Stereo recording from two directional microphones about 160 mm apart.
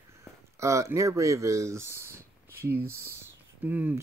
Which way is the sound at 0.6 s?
20° right (ahead or behind).